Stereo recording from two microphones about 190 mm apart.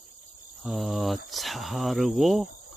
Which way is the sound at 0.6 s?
Centre (ahead or behind).